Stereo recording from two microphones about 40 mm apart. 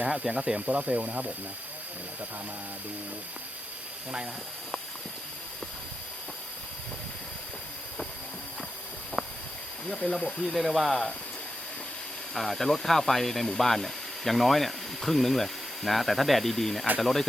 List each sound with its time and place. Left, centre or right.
0.1 s speech: centre
0.7 s speech: right
9.2 s a sound: centre
9.9 s speech: centre
10.5 s speech: centre
12.3 s speech: centre